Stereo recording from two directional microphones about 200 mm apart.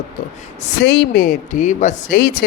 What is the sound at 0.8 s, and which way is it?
Speech, 55° left (ahead or behind).